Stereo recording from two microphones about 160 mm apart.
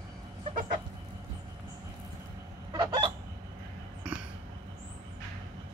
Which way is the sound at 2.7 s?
25° right (ahead or behind).